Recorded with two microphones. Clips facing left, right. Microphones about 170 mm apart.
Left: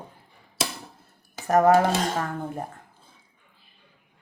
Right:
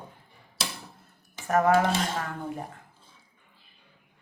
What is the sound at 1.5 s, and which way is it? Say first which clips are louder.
Speech: left 4 dB; 40° left (ahead or behind).